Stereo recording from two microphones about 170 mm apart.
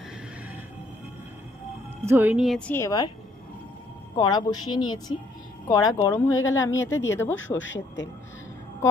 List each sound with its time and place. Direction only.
2.0 s speech: 10° right (ahead or behind)
2.7 s speech: 20° left (ahead or behind)
4.2 s speech: 25° left (ahead or behind)
7.3 s speech: 90° left